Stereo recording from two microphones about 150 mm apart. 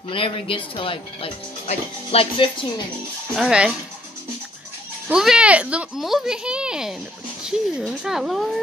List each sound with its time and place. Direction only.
0.1 s speech: 35° left (ahead or behind)
3.3 s speech: 5° right (ahead or behind)
5.0 s speech: 5° right (ahead or behind)